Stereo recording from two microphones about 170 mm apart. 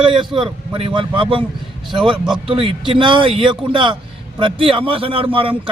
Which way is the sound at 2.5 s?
30° right (ahead or behind).